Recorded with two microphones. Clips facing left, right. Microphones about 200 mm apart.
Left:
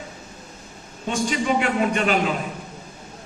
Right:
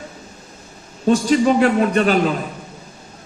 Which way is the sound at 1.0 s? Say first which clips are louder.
Right 9 dB; 40° right (ahead or behind).